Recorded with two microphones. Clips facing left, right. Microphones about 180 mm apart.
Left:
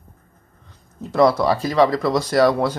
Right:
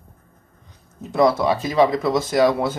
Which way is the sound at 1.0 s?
Centre (ahead or behind).